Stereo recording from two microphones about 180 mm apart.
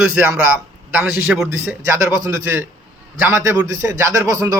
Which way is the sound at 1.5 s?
15° right (ahead or behind).